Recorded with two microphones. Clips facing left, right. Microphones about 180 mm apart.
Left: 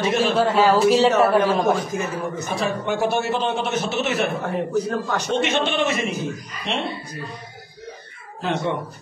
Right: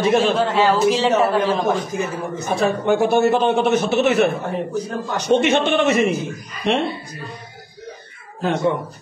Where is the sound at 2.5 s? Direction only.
55° right (ahead or behind).